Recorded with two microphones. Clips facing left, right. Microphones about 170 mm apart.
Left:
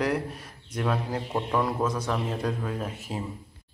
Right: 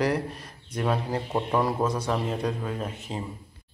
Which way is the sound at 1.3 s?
15° right (ahead or behind).